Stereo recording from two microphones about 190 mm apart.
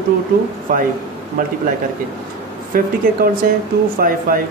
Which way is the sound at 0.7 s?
45° right (ahead or behind).